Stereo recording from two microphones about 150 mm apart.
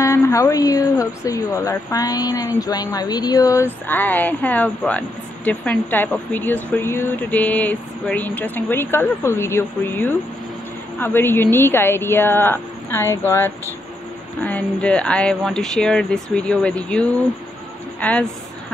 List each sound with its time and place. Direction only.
0.0 s speech: 20° left (ahead or behind)
3.8 s speech: 10° left (ahead or behind)
18.0 s speech: 10° left (ahead or behind)